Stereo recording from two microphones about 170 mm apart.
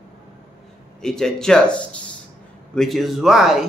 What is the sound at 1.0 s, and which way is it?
Speech, 5° left (ahead or behind).